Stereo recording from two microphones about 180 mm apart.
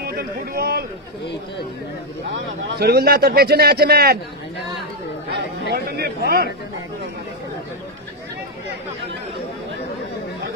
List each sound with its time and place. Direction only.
0.0 s speech: 60° right (ahead or behind)
2.7 s a man's voice: 65° right (ahead or behind)
5.7 s a man's voice: 60° right (ahead or behind)